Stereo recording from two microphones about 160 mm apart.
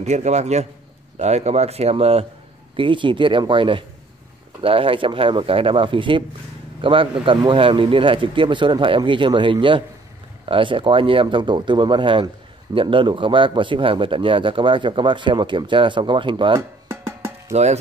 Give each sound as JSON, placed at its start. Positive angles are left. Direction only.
{"t": 0.0, "sound": "a man's voice", "side_deg": -45}
{"t": 16.8, "sound": "music", "side_deg": -15}
{"t": 17.5, "sound": "speech", "side_deg": -45}